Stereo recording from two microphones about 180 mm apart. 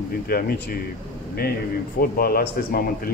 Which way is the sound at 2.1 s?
55° left (ahead or behind).